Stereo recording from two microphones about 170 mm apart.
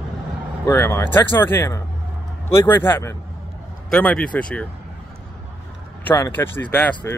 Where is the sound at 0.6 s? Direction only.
15° left (ahead or behind).